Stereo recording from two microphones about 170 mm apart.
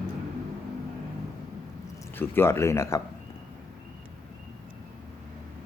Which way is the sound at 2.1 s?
15° left (ahead or behind).